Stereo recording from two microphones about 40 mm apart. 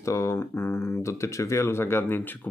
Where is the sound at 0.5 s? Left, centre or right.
Left.